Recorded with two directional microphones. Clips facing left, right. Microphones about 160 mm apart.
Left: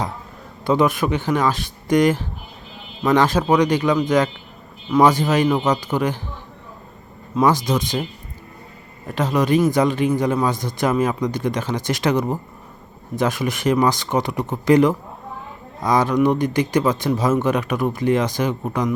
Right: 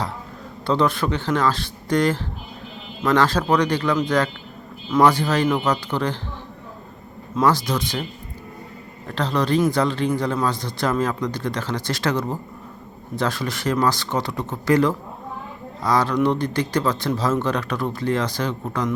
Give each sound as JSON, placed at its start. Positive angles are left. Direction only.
{"t": 0.6, "sound": "speech", "side_deg": 10}
{"t": 7.4, "sound": "speech", "side_deg": 15}
{"t": 9.0, "sound": "speech", "side_deg": 10}